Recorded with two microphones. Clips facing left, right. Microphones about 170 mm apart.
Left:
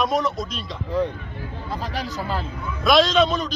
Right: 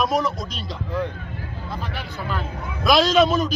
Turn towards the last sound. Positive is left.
turn(degrees=-5)  # may be behind; listen again after turning